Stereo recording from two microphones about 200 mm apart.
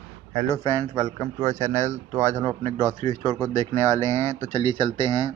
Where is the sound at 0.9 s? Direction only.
30° right (ahead or behind).